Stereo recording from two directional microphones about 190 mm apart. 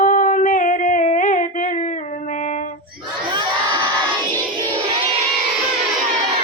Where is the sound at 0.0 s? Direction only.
45° left (ahead or behind).